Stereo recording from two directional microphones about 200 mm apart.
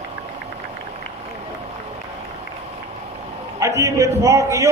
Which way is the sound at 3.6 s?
15° right (ahead or behind).